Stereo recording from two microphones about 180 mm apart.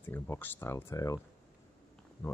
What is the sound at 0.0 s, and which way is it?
Speech, 10° left (ahead or behind).